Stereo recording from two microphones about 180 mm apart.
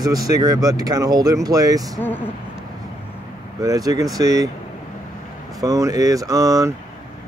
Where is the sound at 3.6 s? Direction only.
20° right (ahead or behind).